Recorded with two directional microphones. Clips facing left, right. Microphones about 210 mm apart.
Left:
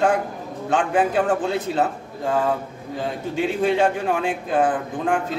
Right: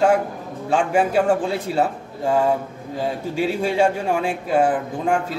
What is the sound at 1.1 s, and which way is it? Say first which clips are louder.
Speech: right 2 dB; 10° right (ahead or behind).